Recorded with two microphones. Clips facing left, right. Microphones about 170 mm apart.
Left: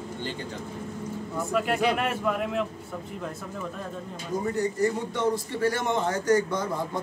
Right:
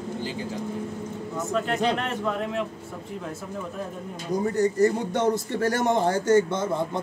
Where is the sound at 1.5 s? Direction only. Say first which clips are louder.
Even; 10° left (ahead or behind).